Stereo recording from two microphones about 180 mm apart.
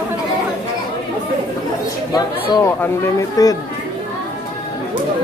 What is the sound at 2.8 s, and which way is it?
Speech, 20° left (ahead or behind).